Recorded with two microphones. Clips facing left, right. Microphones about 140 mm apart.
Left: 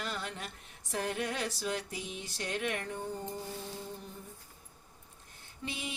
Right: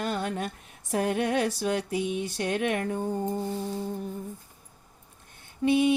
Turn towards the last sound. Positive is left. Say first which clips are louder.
# right 19 dB
turn(degrees=-60)  # may be behind; listen again after turning